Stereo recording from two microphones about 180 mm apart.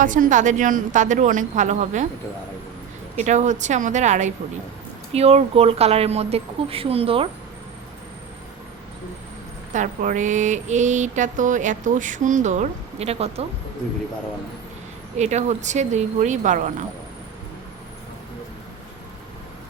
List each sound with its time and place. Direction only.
0.0 s mantra: 45° right (ahead or behind)
3.2 s speech: 40° right (ahead or behind)
9.7 s mantra: 45° right (ahead or behind)
15.2 s speech: 40° right (ahead or behind)